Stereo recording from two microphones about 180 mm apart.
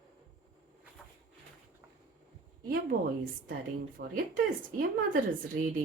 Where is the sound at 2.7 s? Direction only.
55° right (ahead or behind).